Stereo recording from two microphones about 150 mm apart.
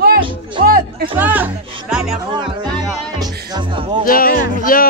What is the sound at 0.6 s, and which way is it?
Music, 80° right.